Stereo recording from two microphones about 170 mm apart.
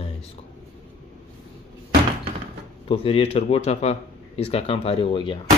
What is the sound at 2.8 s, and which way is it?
Speech, 35° left (ahead or behind).